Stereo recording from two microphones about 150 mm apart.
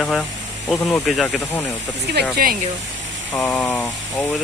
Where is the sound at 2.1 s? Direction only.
75° right (ahead or behind).